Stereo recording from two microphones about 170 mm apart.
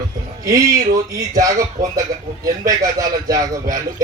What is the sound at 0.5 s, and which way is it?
Speech, 20° right (ahead or behind).